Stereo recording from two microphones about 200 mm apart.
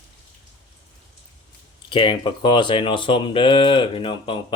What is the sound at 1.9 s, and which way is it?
Speech, 25° left (ahead or behind).